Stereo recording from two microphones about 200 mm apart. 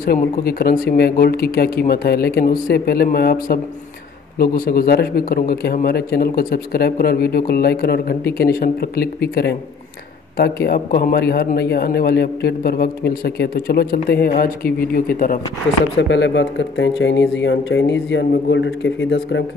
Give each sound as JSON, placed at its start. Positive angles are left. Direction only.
{"t": 0.0, "sound": "a man's voice", "side_deg": 50}
{"t": 16.0, "sound": "speech", "side_deg": 65}